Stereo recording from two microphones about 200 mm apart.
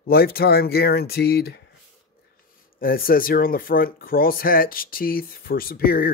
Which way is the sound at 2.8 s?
45° left (ahead or behind).